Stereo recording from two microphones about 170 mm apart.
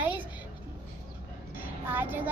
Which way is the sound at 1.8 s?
10° right (ahead or behind).